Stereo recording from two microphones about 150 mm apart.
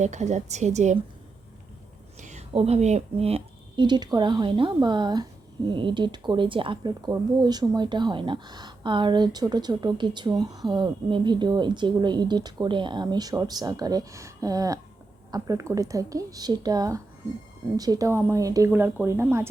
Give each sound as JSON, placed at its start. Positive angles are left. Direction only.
{"t": 0.0, "sound": "a woman's voice", "side_deg": -50}
{"t": 2.5, "sound": "speech", "side_deg": -45}